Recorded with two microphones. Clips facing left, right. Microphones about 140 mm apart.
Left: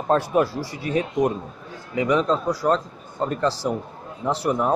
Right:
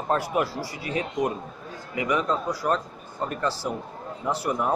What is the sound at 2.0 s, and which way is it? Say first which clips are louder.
A man's voice: left 4 dB; 25° left (ahead or behind).